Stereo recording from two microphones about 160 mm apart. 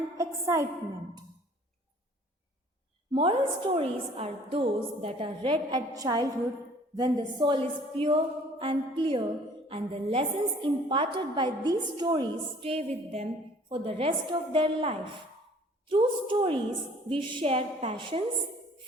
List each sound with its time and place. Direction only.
0.2 s music: 20° right (ahead or behind)
3.1 s a woman's voice: 30° right (ahead or behind)